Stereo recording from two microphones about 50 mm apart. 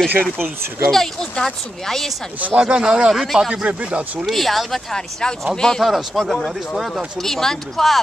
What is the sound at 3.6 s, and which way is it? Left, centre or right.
Speech, right.